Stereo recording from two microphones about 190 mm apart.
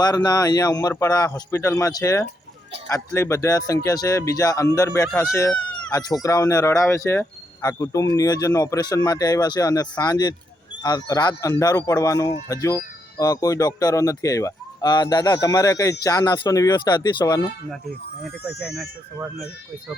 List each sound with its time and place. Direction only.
0.0 s a man's voice: 20° left (ahead or behind)